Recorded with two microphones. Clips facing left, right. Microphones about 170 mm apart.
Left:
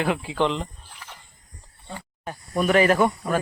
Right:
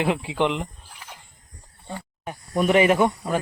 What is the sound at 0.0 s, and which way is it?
Speech, 25° right (ahead or behind).